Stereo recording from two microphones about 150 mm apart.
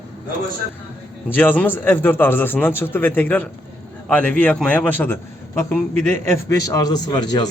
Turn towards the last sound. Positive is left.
turn(degrees=25)  # may be behind; listen again after turning